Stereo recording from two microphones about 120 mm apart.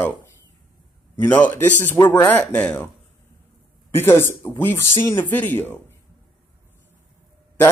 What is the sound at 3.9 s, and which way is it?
Speech, 20° left (ahead or behind).